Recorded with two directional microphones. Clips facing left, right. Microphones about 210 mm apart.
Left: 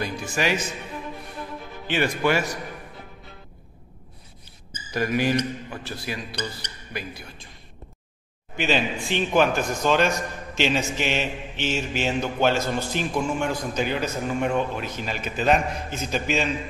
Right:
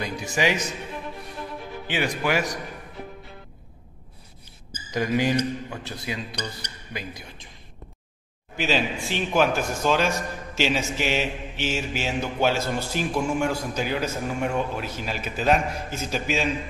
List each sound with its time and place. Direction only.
0.0 s a man's voice: 20° right (ahead or behind)
1.9 s a man's voice: 15° right (ahead or behind)
4.9 s a man's voice: 15° right (ahead or behind)
8.5 s a man's voice: 5° right (ahead or behind)